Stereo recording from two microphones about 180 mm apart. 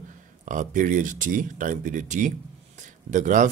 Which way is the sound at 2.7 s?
45° right (ahead or behind).